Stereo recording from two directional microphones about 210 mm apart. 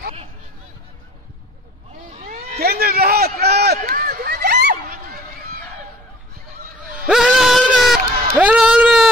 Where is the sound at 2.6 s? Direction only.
45° right (ahead or behind).